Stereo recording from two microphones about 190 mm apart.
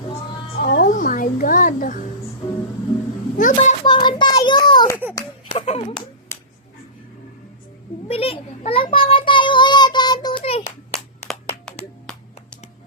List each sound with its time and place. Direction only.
0.6 s music: 55° left (ahead or behind)
3.3 s a child's voice: 45° left (ahead or behind)
3.8 s a sound: 25° left (ahead or behind)
5.5 s speech: 30° left (ahead or behind)
8.0 s child singing: 30° left (ahead or behind)